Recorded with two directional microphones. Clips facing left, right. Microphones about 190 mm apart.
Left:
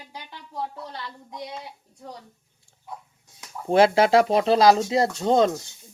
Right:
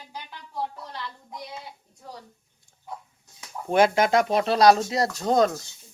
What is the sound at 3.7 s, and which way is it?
Speech, 30° left (ahead or behind).